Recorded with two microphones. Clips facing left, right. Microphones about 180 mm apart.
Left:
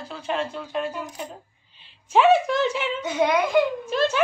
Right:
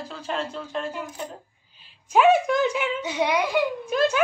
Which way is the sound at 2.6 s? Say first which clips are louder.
Even; 10° right (ahead or behind).